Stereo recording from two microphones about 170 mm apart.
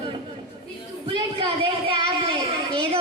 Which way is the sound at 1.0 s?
30° right (ahead or behind).